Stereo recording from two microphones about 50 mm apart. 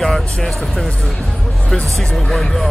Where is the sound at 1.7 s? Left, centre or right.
Centre.